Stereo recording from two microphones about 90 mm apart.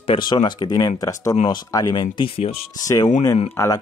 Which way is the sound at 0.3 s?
55° left (ahead or behind).